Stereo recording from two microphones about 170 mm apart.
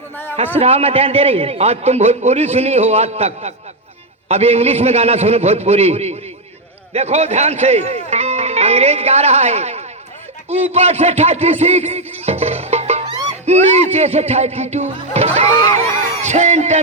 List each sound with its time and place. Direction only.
0.6 s a man's voice: 35° right (ahead or behind)